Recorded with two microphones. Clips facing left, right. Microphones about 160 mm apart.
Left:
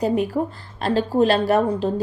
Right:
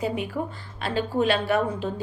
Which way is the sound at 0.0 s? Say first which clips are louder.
Left 7 dB; 40° left (ahead or behind).